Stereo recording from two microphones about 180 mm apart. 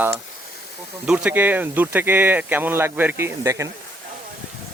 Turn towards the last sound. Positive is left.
turn(degrees=-15)  # may be behind; listen again after turning